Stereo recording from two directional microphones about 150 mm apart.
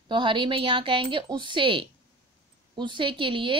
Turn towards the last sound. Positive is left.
turn(degrees=-35)  # may be behind; listen again after turning